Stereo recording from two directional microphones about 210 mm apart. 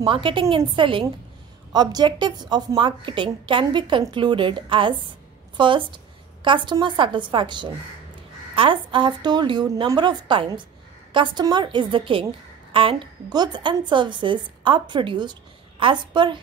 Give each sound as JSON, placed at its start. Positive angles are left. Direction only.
{"t": 0.0, "sound": "a woman's voice", "side_deg": -25}